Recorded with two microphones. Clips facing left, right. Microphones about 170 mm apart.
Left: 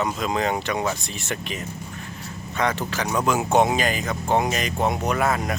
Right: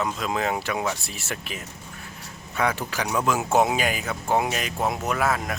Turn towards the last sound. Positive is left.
turn(degrees=0)  # may be behind; listen again after turning